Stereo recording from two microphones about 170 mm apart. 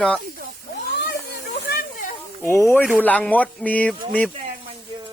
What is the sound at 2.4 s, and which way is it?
Speech, 15° left (ahead or behind).